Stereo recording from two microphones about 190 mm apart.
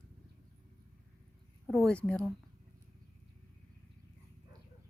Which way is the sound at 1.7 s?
Centre (ahead or behind).